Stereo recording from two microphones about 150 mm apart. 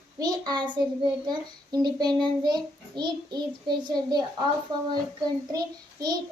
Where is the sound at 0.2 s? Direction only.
25° right (ahead or behind).